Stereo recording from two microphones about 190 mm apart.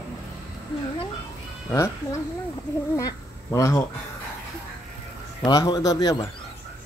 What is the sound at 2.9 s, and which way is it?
Speech, 20° left (ahead or behind).